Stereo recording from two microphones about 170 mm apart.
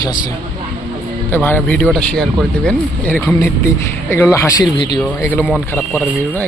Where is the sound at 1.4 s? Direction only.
10° left (ahead or behind); by 5.0 s 25° left (ahead or behind).